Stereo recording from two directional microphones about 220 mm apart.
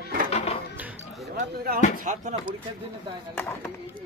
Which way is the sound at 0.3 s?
30° left (ahead or behind).